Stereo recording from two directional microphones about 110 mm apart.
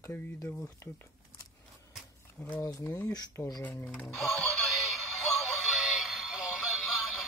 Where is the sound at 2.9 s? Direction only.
30° left (ahead or behind).